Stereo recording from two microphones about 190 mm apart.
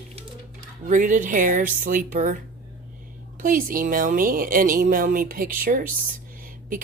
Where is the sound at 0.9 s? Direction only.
40° right (ahead or behind).